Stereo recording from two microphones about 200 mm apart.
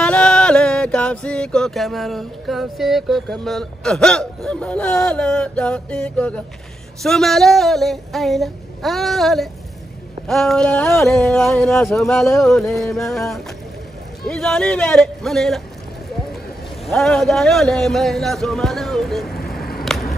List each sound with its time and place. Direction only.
0.0 s music: 5° left (ahead or behind)
16.8 s music: centre (ahead or behind)
19.3 s a sound: 50° left (ahead or behind)